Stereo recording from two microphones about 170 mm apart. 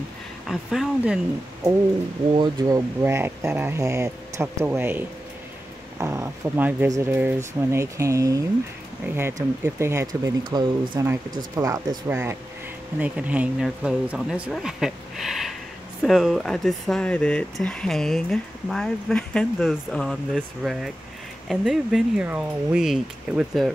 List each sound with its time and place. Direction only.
0.5 s speech: centre (ahead or behind)
2.3 s speech: 25° right (ahead or behind); by 23.7 s centre (ahead or behind)